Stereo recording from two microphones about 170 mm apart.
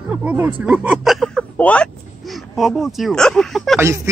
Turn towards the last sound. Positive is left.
turn(degrees=0)  # may be behind; listen again after turning